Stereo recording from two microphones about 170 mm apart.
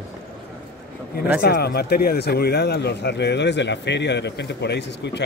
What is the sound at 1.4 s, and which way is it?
Speech, 65° left (ahead or behind).